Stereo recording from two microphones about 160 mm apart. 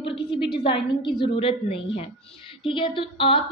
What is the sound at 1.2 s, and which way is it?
A woman's voice, 35° left (ahead or behind).